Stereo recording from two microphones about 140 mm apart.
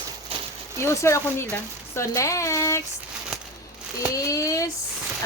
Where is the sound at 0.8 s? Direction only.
20° left (ahead or behind).